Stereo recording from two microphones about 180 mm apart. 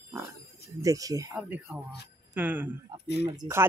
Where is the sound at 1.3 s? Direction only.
10° right (ahead or behind).